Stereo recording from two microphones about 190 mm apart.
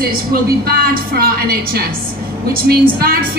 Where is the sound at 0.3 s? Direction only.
55° right (ahead or behind).